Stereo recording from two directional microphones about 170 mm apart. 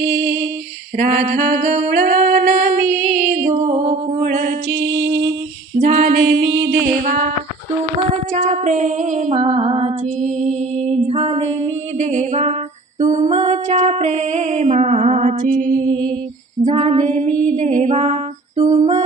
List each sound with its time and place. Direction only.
0.9 s singing: 45° right (ahead or behind)
3.1 s music: 45° right (ahead or behind)
4.7 s music: 90° right
5.8 s female singing: 40° right (ahead or behind)
6.2 s music: 90° right
7.0 s music: 50° right (ahead or behind)
8.3 s music: 45° right (ahead or behind)
11.0 s a sound: 40° right (ahead or behind)
13.0 s music: 45° right (ahead or behind)